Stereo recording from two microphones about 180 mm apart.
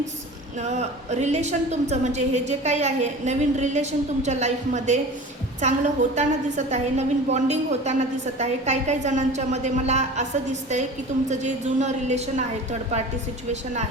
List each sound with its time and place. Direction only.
0.6 s a woman's voice: 40° right (ahead or behind)